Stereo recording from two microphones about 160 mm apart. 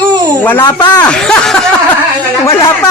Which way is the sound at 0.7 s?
25° left (ahead or behind).